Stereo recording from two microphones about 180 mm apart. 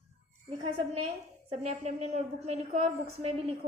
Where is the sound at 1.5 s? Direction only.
35° right (ahead or behind).